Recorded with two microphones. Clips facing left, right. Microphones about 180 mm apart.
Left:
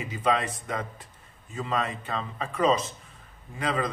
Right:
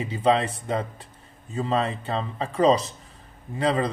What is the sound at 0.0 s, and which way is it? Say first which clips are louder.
A man's voice: right 5 dB; 30° right (ahead or behind).